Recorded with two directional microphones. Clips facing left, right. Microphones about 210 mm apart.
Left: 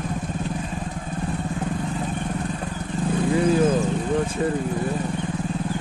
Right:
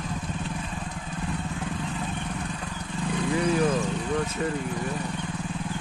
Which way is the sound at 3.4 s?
25° left (ahead or behind).